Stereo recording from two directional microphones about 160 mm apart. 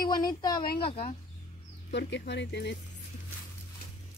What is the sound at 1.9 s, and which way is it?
Speech, 90° left.